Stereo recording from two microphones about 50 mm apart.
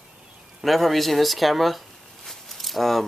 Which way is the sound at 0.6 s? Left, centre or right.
Centre.